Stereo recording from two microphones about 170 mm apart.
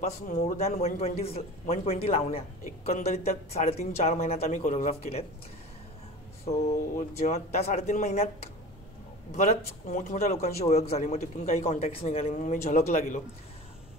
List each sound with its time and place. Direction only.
0.0 s speech: 40° left (ahead or behind)
6.4 s speech: 40° left (ahead or behind)